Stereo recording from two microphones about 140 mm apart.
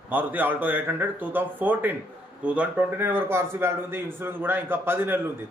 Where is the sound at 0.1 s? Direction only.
15° right (ahead or behind).